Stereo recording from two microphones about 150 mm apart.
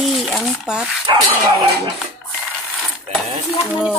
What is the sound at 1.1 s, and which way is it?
Speech, 30° right (ahead or behind).